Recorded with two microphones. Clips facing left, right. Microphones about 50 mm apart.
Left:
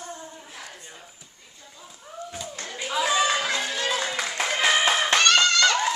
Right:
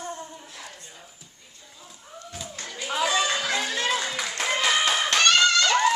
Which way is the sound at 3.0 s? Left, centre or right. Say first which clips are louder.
Left 2 dB; centre.